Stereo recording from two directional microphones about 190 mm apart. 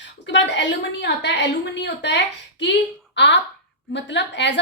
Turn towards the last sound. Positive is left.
turn(degrees=70)  # may be behind; listen again after turning